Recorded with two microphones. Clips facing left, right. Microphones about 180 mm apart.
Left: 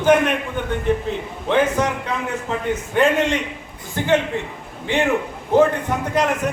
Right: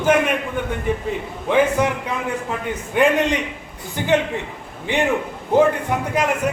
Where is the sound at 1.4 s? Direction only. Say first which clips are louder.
Right 1 dB; 10° right (ahead or behind).